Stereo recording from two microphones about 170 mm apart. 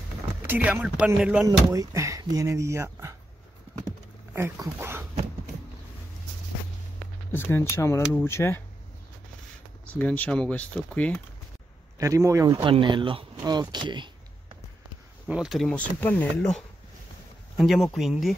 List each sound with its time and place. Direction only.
0.4 s speech: 10° right (ahead or behind)
1.7 s speech: 20° right (ahead or behind)
4.3 s speech: 15° right (ahead or behind)
7.3 s speech: 15° left (ahead or behind)
9.9 s speech: 10° left (ahead or behind)
12.0 s speech: 15° right (ahead or behind)
12.5 s speech: 30° right (ahead or behind)
13.4 s a sound: 25° right (ahead or behind)
15.2 s speech: 5° right (ahead or behind)